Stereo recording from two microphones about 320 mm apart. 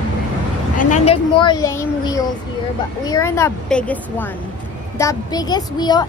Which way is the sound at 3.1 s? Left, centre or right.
Centre.